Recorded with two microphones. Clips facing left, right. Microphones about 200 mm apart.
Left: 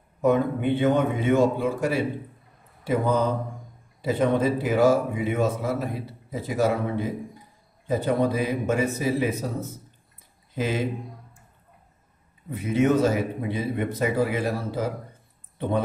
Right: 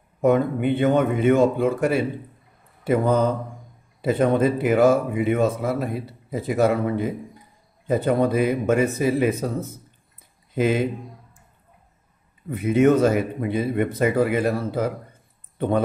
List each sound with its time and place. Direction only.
0.3 s speech: 55° right (ahead or behind)
10.5 s speech: 55° right (ahead or behind)
12.4 s speech: 55° right (ahead or behind)